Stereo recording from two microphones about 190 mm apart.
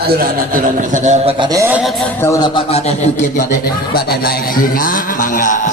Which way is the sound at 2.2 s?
15° left (ahead or behind).